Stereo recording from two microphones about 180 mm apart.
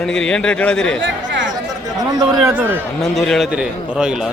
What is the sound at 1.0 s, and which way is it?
Chatter, 85° right.